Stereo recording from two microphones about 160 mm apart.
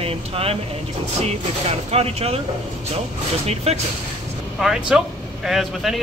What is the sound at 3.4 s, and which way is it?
Speech, 40° right (ahead or behind).